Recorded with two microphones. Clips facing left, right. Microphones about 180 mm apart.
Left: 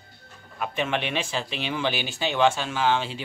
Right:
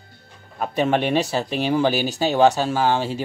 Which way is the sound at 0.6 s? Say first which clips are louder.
Right 7 dB; 40° right (ahead or behind).